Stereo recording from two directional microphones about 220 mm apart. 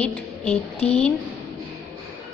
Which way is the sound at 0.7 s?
30° left (ahead or behind).